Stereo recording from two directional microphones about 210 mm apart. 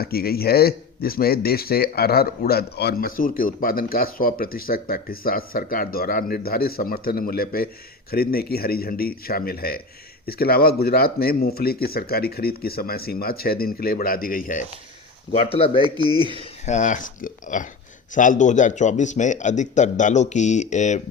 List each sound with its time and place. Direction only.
0.0 s speech: 45° left (ahead or behind)
15.3 s speech: 25° left (ahead or behind)
15.8 s speech: 20° right (ahead or behind)
16.4 s speech: 35° left (ahead or behind)